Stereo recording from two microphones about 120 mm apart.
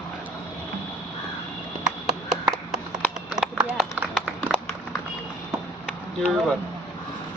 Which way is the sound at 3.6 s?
15° right (ahead or behind).